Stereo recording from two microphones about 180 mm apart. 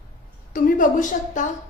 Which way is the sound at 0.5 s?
50° left (ahead or behind).